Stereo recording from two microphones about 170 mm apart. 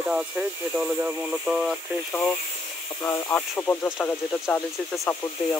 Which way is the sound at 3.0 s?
15° left (ahead or behind).